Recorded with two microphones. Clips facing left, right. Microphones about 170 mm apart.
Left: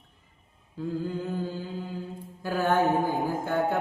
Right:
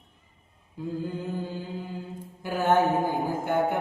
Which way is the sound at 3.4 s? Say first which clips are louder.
Right 1 dB; 20° right (ahead or behind).